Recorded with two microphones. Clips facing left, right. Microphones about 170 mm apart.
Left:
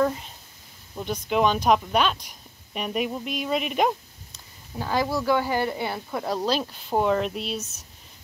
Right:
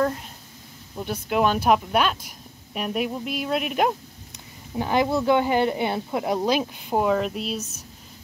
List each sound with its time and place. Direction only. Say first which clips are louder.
0.9 s speech: even; 5° right (ahead or behind)
4.7 s speech: right 4 dB; 20° right (ahead or behind); by 7.6 s centre (ahead or behind)